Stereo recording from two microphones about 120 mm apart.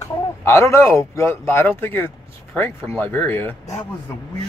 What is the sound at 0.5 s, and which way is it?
Speech, 25° left (ahead or behind).